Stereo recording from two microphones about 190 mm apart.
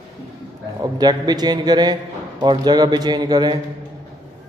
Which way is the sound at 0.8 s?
20° right (ahead or behind).